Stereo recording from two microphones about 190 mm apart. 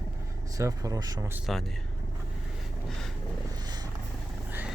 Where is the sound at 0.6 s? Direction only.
20° right (ahead or behind).